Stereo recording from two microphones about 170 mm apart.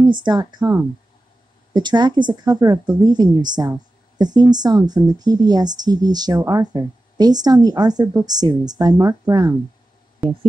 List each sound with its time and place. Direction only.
0.1 s speech: 25° right (ahead or behind)
10.2 s speech: 10° right (ahead or behind)